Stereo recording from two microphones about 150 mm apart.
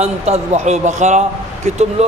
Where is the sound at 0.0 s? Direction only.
45° right (ahead or behind).